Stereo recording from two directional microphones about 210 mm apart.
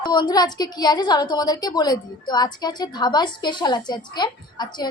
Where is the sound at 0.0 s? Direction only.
20° left (ahead or behind).